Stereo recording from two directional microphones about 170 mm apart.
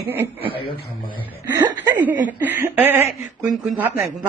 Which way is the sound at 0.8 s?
55° left (ahead or behind).